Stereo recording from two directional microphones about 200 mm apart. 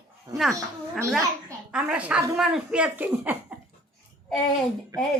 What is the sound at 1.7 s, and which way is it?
Speech, 5° right (ahead or behind).